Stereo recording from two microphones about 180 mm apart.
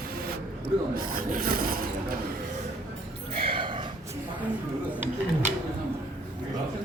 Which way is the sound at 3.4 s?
30° right (ahead or behind).